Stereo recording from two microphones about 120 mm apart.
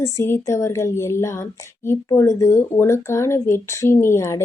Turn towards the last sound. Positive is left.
turn(degrees=25)  # may be behind; listen again after turning